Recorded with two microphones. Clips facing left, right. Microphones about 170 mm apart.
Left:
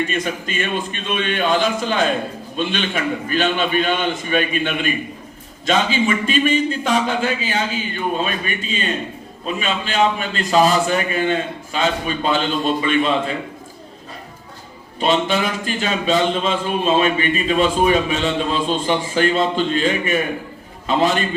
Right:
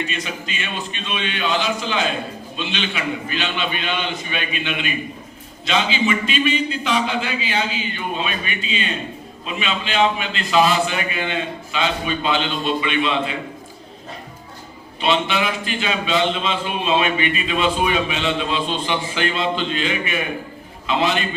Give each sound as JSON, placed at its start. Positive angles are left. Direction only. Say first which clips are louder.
{"t": 0.0, "sound": "speech", "louder": "left 5 dB", "side_deg": 50}
{"t": 15.0, "sound": "speech", "louder": "left 2 dB", "side_deg": 45}